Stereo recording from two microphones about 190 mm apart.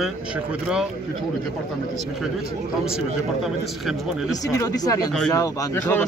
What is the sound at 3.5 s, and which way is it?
Speech, centre (ahead or behind).